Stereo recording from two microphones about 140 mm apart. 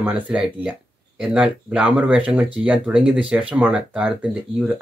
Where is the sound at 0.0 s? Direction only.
5° right (ahead or behind).